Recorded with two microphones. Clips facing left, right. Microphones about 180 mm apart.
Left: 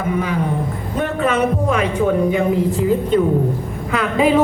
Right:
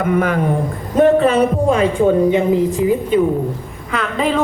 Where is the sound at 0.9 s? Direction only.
35° right (ahead or behind).